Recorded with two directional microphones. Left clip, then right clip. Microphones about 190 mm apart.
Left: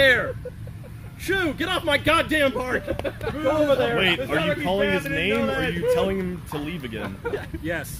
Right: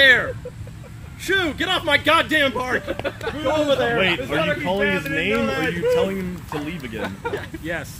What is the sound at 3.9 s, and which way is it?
Speech, 60° left (ahead or behind).